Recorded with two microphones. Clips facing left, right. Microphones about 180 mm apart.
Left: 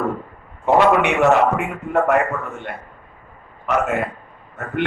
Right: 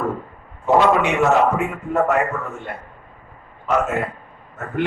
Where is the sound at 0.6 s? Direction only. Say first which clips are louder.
Left 1 dB; 65° left (ahead or behind).